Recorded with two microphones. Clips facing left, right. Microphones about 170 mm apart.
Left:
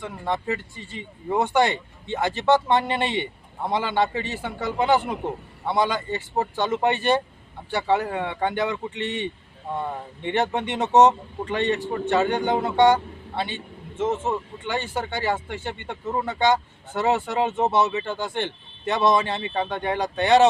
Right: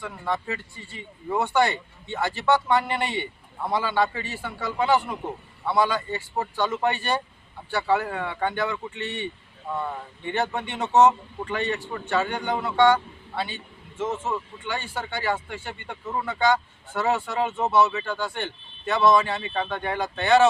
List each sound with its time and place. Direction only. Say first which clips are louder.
0.0 s speech: left 2 dB; 20° left (ahead or behind)